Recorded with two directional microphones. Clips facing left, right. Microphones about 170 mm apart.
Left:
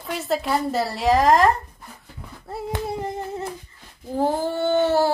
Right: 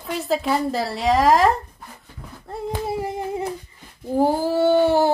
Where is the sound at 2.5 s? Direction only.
Centre (ahead or behind).